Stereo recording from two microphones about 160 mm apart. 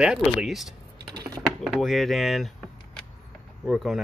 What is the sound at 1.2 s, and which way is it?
Typing, 25° right (ahead or behind).